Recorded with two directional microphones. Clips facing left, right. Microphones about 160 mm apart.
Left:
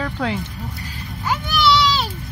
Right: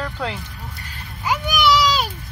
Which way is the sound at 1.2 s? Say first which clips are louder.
Even; 15° right (ahead or behind).